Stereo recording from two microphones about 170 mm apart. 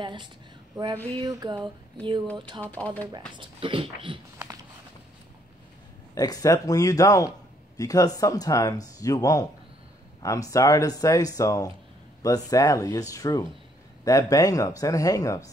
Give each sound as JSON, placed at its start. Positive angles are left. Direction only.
{"t": 0.0, "sound": "a sound", "side_deg": -30}
{"t": 2.6, "sound": "speech", "side_deg": 10}
{"t": 3.3, "sound": "speech", "side_deg": -30}
{"t": 6.1, "sound": "speech", "side_deg": 20}